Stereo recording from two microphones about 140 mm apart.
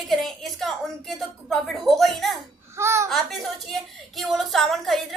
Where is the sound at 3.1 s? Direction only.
Centre (ahead or behind).